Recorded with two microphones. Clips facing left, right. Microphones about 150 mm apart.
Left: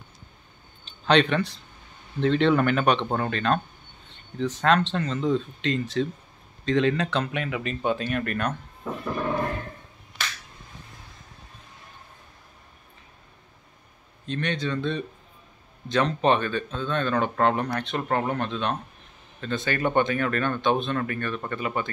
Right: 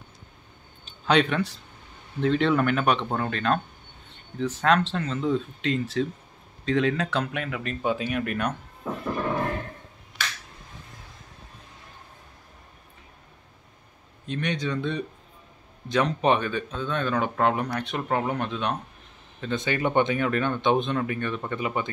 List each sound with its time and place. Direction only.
0.8 s speech: 5° right (ahead or behind)
14.2 s speech: 10° right (ahead or behind)